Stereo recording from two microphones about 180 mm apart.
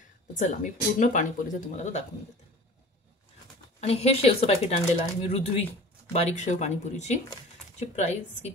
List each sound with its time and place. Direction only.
0.4 s speech: 45° left (ahead or behind)
3.8 s speech: 35° left (ahead or behind)